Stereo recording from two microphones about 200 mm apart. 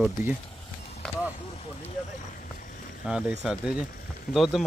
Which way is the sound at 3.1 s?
5° right (ahead or behind).